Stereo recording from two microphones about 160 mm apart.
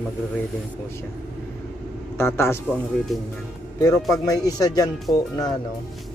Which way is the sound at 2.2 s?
15° left (ahead or behind).